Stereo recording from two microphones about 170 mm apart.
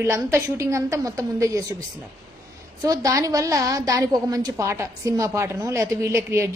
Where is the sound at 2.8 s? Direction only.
20° right (ahead or behind).